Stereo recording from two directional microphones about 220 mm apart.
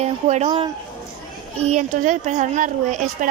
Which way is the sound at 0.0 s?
30° right (ahead or behind).